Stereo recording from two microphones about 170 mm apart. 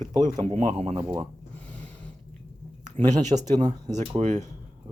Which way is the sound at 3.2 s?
45° right (ahead or behind).